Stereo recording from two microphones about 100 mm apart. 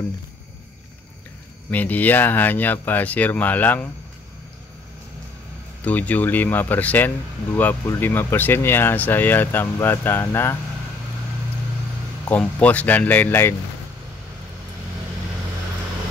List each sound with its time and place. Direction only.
1.7 s speech: 15° left (ahead or behind)
5.9 s speech: 15° left (ahead or behind)
12.3 s speech: 15° left (ahead or behind)